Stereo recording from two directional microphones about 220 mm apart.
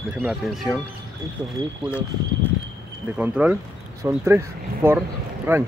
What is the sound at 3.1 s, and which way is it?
Speech, 5° right (ahead or behind).